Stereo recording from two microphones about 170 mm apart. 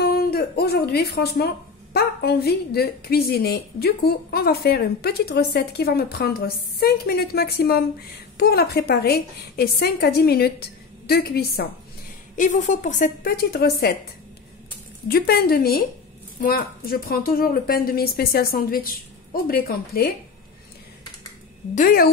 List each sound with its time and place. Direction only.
0.0 s music: 70° left (ahead or behind)
2.0 s a woman's voice: 70° left (ahead or behind)
12.4 s a woman's voice: 45° left (ahead or behind); by 13.9 s 65° left (ahead or behind)
15.0 s a woman's voice: 65° left (ahead or behind)
21.7 s a woman's voice: 55° left (ahead or behind)